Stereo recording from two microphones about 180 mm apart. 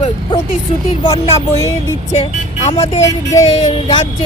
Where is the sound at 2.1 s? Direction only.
40° left (ahead or behind).